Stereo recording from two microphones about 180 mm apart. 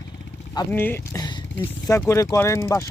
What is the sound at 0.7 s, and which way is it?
Speech, 10° left (ahead or behind).